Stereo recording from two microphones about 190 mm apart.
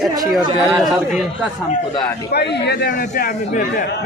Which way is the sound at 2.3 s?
60° left (ahead or behind).